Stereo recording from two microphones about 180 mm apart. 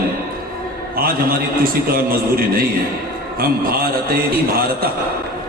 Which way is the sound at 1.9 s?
55° right (ahead or behind).